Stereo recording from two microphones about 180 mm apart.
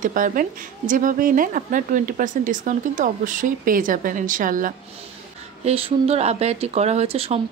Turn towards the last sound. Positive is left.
turn(degrees=-35)  # may be behind; listen again after turning